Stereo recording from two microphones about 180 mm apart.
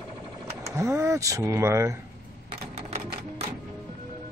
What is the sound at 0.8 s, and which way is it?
Speech, 15° right (ahead or behind).